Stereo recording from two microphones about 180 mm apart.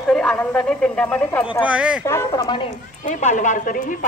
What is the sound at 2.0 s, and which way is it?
Speech, 15° left (ahead or behind).